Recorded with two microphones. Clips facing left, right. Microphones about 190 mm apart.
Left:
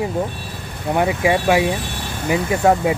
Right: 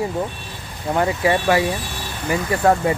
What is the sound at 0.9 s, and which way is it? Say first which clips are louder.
Speech: left 1 dB; 15° left (ahead or behind).